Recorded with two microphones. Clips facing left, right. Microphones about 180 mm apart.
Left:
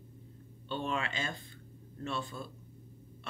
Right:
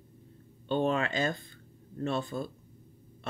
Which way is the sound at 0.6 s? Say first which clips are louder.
Right 7 dB; 45° right (ahead or behind).